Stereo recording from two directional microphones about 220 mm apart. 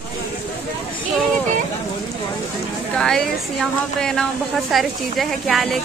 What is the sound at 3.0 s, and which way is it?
Speech, 5° left (ahead or behind).